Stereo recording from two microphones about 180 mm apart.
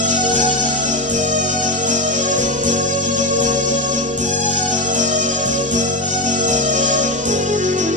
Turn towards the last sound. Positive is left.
turn(degrees=-45)  # may be behind; listen again after turning